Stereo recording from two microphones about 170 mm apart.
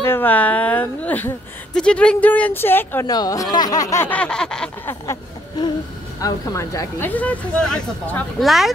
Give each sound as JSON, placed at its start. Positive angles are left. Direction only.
{"t": 0.0, "sound": "a woman's voice", "side_deg": 10}
{"t": 5.0, "sound": "a sound", "side_deg": 20}
{"t": 6.2, "sound": "a woman's voice", "side_deg": 20}